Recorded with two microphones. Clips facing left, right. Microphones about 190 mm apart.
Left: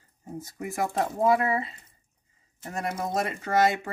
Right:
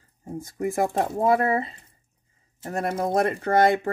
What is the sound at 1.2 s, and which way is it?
Speech, 50° right (ahead or behind).